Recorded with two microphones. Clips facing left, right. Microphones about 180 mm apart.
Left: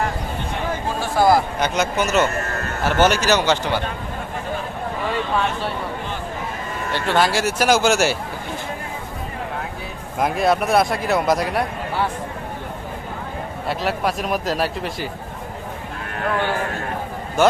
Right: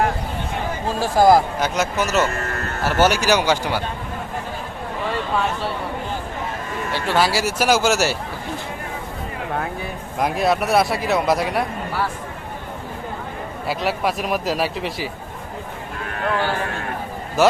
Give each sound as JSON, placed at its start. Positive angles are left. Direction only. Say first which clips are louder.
{"t": 0.9, "sound": "a man's voice", "louder": "right 3 dB", "side_deg": -40}
{"t": 1.5, "sound": "a man's voice", "louder": "left 1 dB", "side_deg": -5}
{"t": 6.9, "sound": "speech", "louder": "left 1 dB", "side_deg": -5}
{"t": 10.2, "sound": "speech", "louder": "left 1 dB", "side_deg": 0}
{"t": 13.7, "sound": "speech", "louder": "even", "side_deg": 0}